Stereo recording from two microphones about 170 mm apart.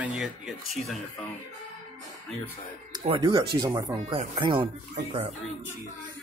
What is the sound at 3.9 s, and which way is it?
Speech, 35° right (ahead or behind).